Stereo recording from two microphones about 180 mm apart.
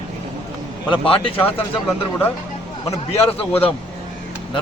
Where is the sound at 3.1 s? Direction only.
30° left (ahead or behind).